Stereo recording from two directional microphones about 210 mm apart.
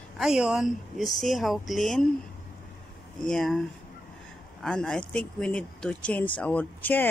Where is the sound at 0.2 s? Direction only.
5° right (ahead or behind).